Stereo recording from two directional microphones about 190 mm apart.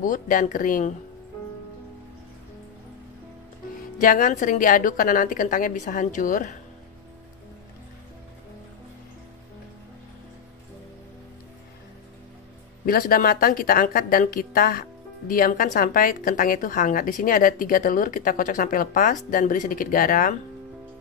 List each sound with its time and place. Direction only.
0.0 s speech: 45° left (ahead or behind)
4.0 s speech: 45° left (ahead or behind)
12.8 s speech: 50° left (ahead or behind)